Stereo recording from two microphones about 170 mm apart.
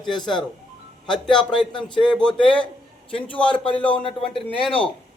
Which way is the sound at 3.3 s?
5° left (ahead or behind).